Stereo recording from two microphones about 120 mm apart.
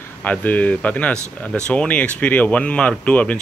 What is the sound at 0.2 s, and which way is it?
A man's voice, 15° left (ahead or behind).